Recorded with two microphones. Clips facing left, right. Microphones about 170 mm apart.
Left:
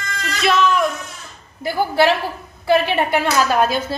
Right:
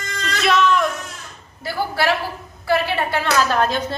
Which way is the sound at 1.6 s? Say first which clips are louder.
Left 6 dB; 15° left (ahead or behind).